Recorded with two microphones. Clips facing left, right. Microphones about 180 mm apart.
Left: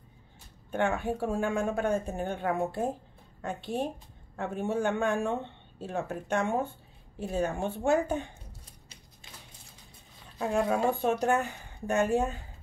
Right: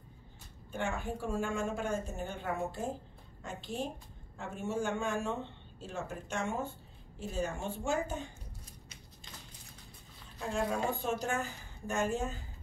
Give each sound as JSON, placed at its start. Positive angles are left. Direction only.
{"t": 0.7, "sound": "speech", "side_deg": 60}
{"t": 10.4, "sound": "speech", "side_deg": 60}